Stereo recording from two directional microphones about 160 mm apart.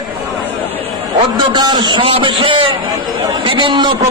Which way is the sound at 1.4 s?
25° right (ahead or behind).